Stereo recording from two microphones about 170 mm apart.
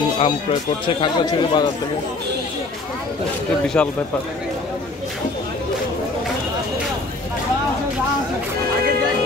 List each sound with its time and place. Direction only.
0.2 s speech: 35° left (ahead or behind)
3.6 s speech: 5° left (ahead or behind)